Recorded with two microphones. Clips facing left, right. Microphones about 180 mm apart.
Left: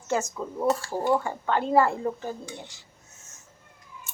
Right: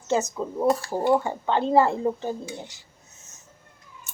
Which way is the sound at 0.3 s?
20° right (ahead or behind).